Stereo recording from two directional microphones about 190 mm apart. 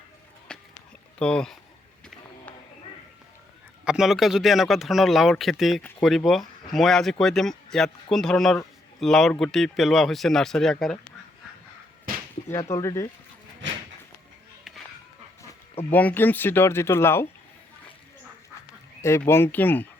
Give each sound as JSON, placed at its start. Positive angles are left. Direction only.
{"t": 0.5, "sound": "a sound", "side_deg": 5}
{"t": 1.2, "sound": "speech", "side_deg": 5}
{"t": 3.8, "sound": "speech", "side_deg": 0}
{"t": 12.5, "sound": "speech", "side_deg": 15}
{"t": 15.9, "sound": "speech", "side_deg": 10}
{"t": 19.0, "sound": "speech", "side_deg": 15}